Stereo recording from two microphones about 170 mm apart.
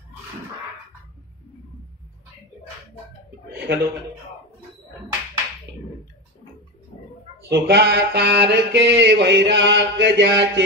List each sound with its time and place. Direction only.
3.5 s chuckle: 80° right
6.9 s oink: 35° left (ahead or behind)
7.4 s mantra: 80° right